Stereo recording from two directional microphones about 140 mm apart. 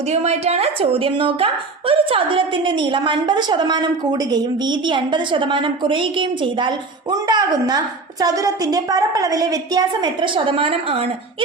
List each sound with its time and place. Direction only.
0.1 s a woman's voice: 50° right (ahead or behind)